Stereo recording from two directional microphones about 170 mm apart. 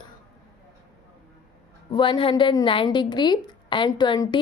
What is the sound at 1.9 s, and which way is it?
A woman's voice, 30° left (ahead or behind).